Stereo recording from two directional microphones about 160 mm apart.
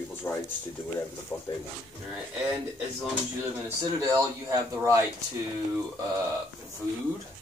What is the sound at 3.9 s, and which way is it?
Speech, 20° right (ahead or behind).